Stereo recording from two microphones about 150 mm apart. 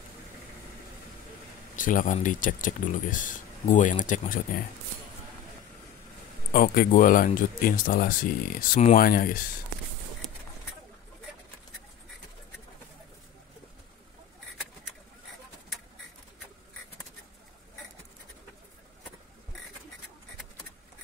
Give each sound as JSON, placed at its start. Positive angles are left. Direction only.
{"t": 1.8, "sound": "speech", "side_deg": 60}
{"t": 6.5, "sound": "speech", "side_deg": 80}